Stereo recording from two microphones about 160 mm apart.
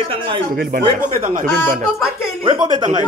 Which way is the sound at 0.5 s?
70° right (ahead or behind).